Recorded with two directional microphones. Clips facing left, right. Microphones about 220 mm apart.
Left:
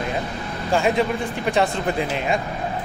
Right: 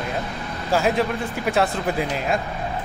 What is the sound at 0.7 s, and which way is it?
Speech, centre (ahead or behind).